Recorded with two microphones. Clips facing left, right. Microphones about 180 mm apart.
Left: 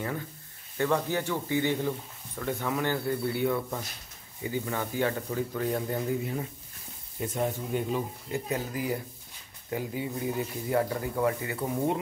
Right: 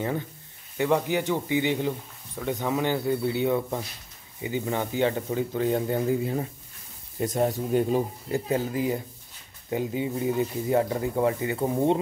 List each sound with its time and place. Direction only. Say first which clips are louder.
0.7 s speech: right 3 dB; 15° right (ahead or behind)
7.2 s speech: right 5 dB; 40° right (ahead or behind)